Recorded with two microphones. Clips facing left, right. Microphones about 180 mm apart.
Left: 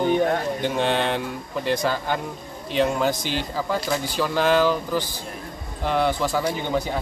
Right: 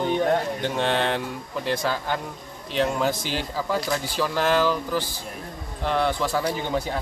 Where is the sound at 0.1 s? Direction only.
Centre (ahead or behind).